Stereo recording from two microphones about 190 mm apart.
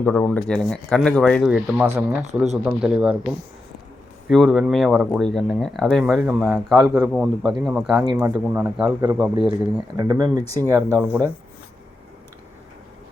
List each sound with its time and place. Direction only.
0.0 s speech: 5° left (ahead or behind)
1.5 s speech: 10° right (ahead or behind)
4.3 s speech: centre (ahead or behind)
10.0 s speech: 20° right (ahead or behind)